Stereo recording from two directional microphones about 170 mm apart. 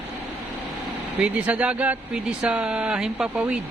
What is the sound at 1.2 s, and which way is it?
Speech, 5° right (ahead or behind).